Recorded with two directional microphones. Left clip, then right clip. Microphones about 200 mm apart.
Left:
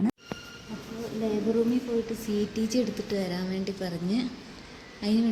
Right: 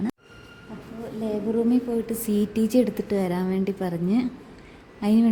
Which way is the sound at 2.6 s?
60° right (ahead or behind).